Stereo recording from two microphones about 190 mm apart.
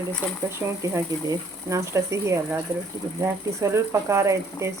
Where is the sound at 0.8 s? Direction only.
15° right (ahead or behind).